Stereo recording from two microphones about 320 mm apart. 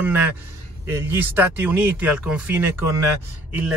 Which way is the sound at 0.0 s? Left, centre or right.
Centre.